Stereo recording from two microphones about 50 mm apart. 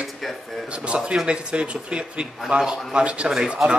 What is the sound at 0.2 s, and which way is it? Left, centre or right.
Speech, centre.